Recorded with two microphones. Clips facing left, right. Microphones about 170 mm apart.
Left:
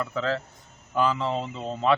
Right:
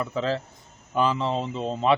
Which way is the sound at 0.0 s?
20° right (ahead or behind).